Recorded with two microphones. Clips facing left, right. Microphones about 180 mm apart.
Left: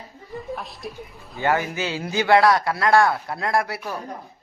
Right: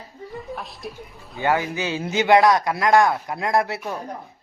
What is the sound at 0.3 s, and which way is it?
Speech, centre (ahead or behind).